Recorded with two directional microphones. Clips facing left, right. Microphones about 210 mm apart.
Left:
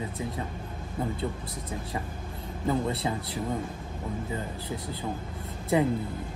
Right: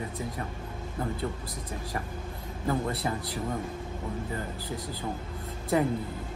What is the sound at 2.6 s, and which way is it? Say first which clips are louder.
Speech: left 2 dB; 25° left (ahead or behind).